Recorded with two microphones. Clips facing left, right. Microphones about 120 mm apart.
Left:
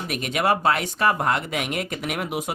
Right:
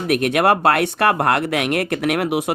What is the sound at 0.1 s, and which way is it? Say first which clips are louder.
Speech: right 7 dB; 60° right (ahead or behind).